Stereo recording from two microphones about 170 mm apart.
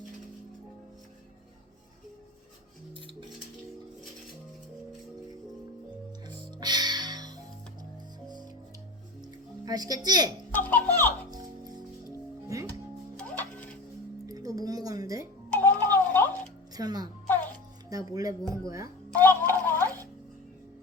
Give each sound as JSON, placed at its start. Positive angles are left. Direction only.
{"t": 6.2, "sound": "music", "side_deg": -25}
{"t": 9.2, "sound": "music", "side_deg": -25}
{"t": 10.5, "sound": "a child's voice", "side_deg": 10}
{"t": 11.3, "sound": "music", "side_deg": -20}
{"t": 13.1, "sound": "music", "side_deg": 10}
{"t": 14.3, "sound": "music", "side_deg": -20}
{"t": 15.5, "sound": "clock", "side_deg": 10}
{"t": 16.7, "sound": "music", "side_deg": -25}
{"t": 19.2, "sound": "tick", "side_deg": 10}